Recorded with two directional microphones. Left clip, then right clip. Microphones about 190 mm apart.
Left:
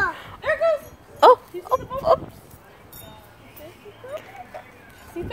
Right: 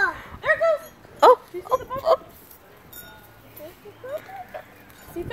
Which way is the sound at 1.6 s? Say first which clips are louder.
Left 1 dB; centre (ahead or behind).